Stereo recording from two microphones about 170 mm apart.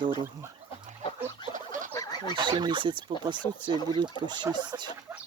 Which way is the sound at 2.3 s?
25° right (ahead or behind).